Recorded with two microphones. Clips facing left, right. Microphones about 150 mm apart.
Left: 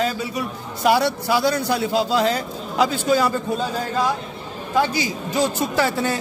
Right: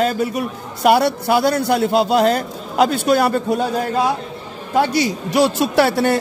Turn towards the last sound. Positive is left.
turn(degrees=-70)  # may be behind; listen again after turning